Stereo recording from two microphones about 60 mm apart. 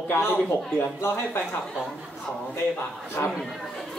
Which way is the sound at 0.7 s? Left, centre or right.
Left.